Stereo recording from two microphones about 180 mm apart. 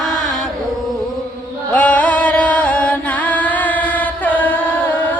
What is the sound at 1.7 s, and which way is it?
Music, 5° left (ahead or behind).